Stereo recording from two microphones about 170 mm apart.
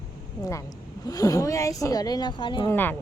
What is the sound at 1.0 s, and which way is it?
Speech, 20° left (ahead or behind).